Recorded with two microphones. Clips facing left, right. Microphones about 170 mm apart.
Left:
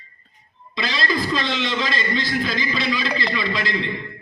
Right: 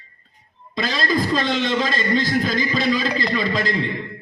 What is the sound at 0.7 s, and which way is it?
A man's voice, 45° right (ahead or behind).